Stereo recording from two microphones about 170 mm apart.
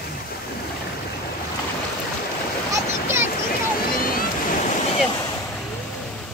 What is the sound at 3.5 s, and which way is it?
Boat, 60° left (ahead or behind).